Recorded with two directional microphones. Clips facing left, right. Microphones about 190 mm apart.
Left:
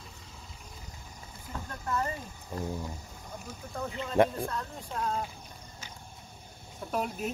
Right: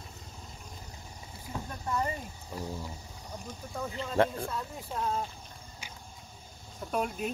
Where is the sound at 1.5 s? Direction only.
15° right (ahead or behind).